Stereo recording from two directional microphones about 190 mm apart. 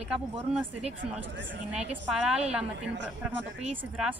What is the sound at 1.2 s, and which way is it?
Speech, 75° right (ahead or behind).